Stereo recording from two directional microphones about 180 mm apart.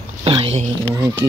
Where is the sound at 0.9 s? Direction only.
15° right (ahead or behind).